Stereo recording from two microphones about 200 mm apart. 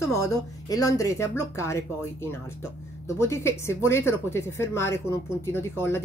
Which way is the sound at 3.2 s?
15° left (ahead or behind).